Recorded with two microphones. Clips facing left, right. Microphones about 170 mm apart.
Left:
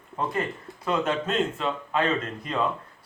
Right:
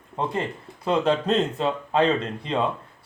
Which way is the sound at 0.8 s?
30° right (ahead or behind).